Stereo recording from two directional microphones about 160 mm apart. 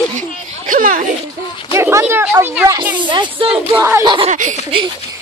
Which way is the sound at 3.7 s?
15° right (ahead or behind).